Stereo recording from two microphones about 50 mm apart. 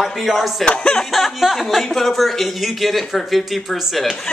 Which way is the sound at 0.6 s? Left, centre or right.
Centre.